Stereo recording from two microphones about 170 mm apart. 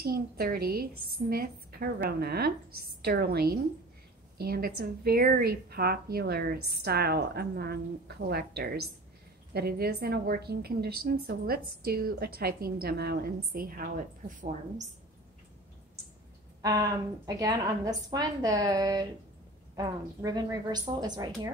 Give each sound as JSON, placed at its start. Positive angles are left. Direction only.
{"t": 0.0, "sound": "a woman's voice", "side_deg": -60}
{"t": 17.3, "sound": "a woman's voice", "side_deg": -20}